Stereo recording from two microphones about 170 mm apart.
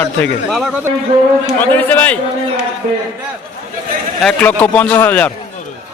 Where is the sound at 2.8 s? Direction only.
45° right (ahead or behind).